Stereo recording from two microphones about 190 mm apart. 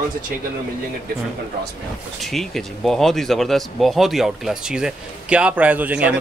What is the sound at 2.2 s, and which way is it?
Speech, centre (ahead or behind).